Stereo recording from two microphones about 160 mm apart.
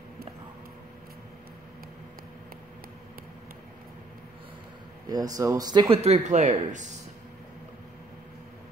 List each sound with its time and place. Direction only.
5.1 s speech: 25° right (ahead or behind)
5.9 s speech: 45° right (ahead or behind)